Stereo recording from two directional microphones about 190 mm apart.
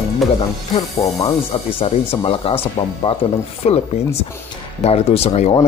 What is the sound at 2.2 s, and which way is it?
Speech, 30° left (ahead or behind).